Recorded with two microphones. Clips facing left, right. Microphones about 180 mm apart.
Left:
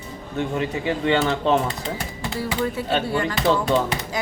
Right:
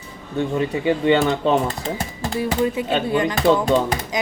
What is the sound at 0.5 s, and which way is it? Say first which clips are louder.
Speech: right 5 dB; 25° right (ahead or behind).